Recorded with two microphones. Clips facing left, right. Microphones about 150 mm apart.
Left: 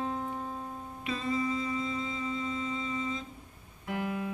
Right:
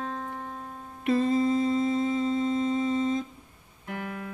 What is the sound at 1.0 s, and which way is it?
Humming, 60° right (ahead or behind).